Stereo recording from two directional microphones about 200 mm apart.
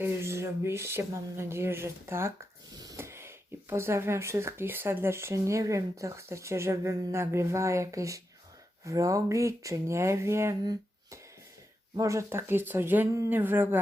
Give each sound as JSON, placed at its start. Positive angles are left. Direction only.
{"t": 0.0, "sound": "speech", "side_deg": -15}